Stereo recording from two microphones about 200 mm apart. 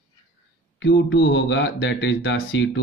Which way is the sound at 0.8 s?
60° left (ahead or behind).